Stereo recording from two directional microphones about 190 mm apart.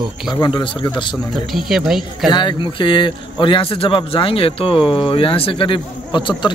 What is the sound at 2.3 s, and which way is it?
A man's voice, 25° left (ahead or behind).